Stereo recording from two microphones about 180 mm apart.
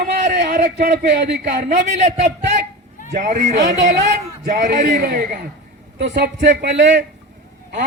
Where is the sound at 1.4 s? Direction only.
50° right (ahead or behind).